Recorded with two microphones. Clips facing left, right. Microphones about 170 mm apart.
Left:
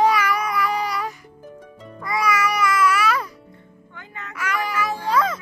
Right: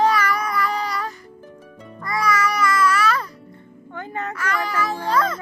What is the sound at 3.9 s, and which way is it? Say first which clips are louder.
Music: right 11 dB; 40° right (ahead or behind).